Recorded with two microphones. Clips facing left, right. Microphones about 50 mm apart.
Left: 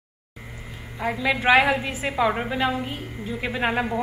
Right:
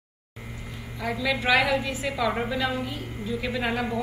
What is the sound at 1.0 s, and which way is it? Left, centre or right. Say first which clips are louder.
A woman's voice: left 4 dB; left.